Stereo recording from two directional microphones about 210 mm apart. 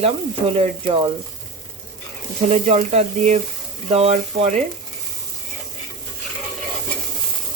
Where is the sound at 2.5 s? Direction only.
30° right (ahead or behind).